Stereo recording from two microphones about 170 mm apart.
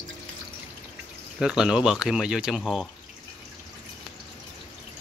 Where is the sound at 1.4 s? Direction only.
5° right (ahead or behind).